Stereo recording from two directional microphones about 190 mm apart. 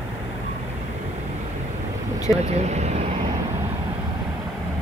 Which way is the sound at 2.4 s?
35° right (ahead or behind).